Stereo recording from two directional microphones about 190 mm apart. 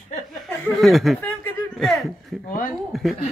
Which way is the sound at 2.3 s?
Centre (ahead or behind).